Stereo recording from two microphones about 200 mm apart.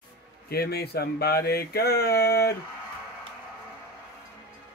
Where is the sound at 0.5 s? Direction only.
50° left (ahead or behind).